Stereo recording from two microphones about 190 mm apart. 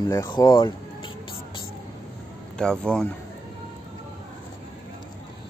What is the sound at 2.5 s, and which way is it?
Speech, 5° left (ahead or behind).